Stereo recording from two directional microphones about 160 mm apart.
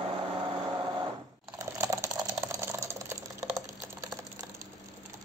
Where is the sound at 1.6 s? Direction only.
20° right (ahead or behind).